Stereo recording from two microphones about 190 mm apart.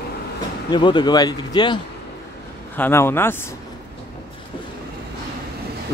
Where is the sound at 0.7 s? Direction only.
25° left (ahead or behind).